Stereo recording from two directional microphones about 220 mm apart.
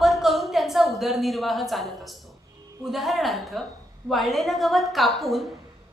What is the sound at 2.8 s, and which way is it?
A woman's voice, centre (ahead or behind).